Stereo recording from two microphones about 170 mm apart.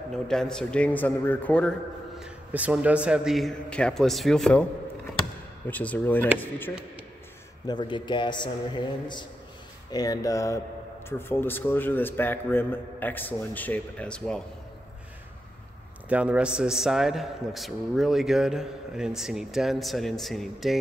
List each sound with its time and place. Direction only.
0.1 s a man's voice: 5° left (ahead or behind)
5.7 s a man's voice: 10° left (ahead or behind)
7.6 s a man's voice: 25° left (ahead or behind); by 14.4 s 5° left (ahead or behind)
16.1 s a man's voice: 5° right (ahead or behind)